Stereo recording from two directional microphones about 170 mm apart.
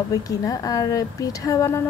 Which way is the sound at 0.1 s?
20° left (ahead or behind).